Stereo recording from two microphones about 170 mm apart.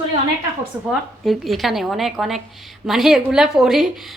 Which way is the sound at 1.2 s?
Centre (ahead or behind).